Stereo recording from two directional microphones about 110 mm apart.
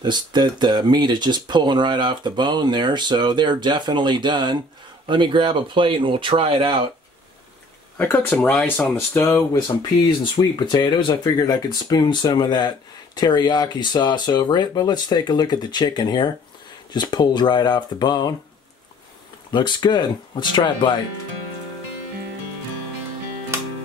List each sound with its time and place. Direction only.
0.0 s speech: 40° right (ahead or behind)
8.0 s speech: 15° left (ahead or behind)
9.8 s speech: 40° left (ahead or behind)
19.5 s speech: 45° left (ahead or behind)